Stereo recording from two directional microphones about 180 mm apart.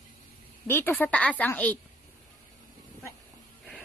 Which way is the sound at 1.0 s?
10° left (ahead or behind).